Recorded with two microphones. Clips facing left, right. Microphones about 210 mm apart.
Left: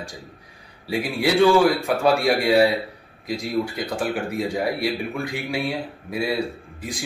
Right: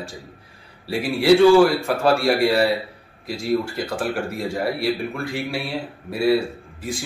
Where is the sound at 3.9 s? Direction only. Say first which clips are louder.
Even; centre (ahead or behind).